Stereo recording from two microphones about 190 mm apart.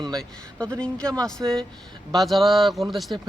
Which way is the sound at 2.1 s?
Centre (ahead or behind).